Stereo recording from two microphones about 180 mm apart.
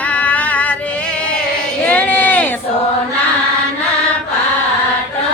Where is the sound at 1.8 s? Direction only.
10° left (ahead or behind).